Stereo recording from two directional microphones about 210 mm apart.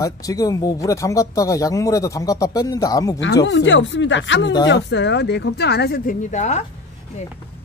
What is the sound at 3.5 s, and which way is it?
Speech, 60° left (ahead or behind).